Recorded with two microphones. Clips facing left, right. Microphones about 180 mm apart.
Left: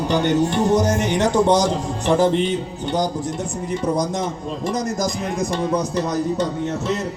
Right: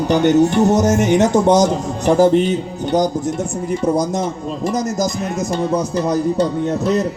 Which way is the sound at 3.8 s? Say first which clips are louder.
Right 4 dB; 25° right (ahead or behind).